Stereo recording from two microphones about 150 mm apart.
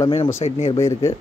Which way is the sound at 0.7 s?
20° left (ahead or behind).